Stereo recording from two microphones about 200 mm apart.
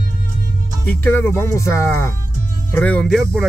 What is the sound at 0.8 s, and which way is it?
Speech, 10° left (ahead or behind).